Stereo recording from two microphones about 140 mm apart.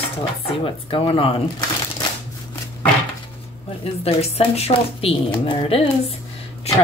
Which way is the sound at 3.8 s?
45° left (ahead or behind).